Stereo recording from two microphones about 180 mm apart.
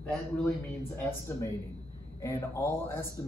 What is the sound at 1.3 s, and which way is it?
Speech, 15° left (ahead or behind).